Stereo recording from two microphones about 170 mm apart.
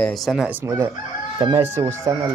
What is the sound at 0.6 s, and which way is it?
Chicken, 20° right (ahead or behind).